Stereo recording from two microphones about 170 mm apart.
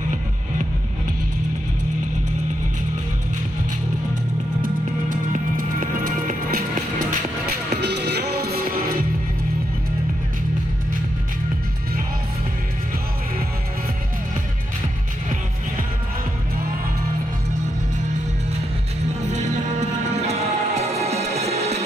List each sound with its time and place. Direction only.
5.3 s music: 50° right (ahead or behind)
7.8 s music: 80° right
19.2 s music: 45° right (ahead or behind)